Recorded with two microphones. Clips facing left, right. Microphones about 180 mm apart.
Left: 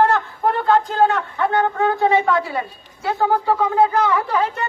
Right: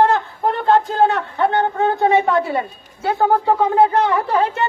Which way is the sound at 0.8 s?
25° right (ahead or behind).